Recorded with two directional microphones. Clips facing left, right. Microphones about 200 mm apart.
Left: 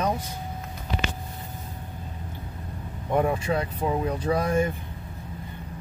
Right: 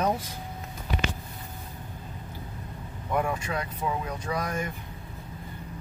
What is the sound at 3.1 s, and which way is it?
Speech, 30° left (ahead or behind).